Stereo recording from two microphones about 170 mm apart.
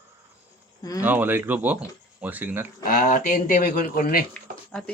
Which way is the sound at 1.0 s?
10° right (ahead or behind).